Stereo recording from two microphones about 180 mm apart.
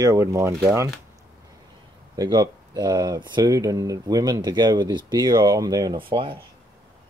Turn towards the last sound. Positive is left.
turn(degrees=-30)  # may be behind; listen again after turning